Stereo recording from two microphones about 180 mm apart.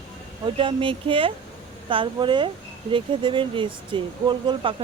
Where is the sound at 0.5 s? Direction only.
30° right (ahead or behind).